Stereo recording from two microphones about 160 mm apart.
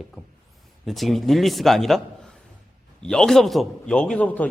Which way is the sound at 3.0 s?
5° left (ahead or behind).